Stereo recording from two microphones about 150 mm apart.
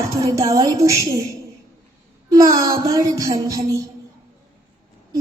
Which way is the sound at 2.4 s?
25° right (ahead or behind).